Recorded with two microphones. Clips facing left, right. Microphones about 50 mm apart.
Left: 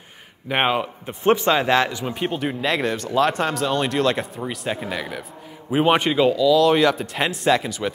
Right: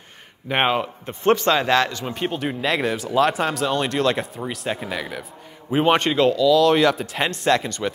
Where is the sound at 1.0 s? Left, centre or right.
Centre.